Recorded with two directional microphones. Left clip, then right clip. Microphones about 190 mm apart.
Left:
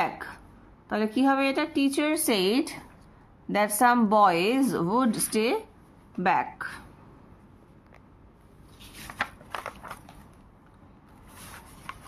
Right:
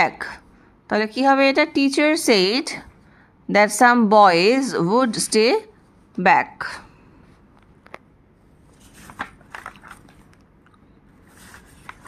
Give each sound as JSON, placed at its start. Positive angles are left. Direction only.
{"t": 0.0, "sound": "speech", "side_deg": -35}